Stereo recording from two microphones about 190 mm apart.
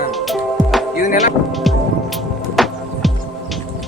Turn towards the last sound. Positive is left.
turn(degrees=0)  # may be behind; listen again after turning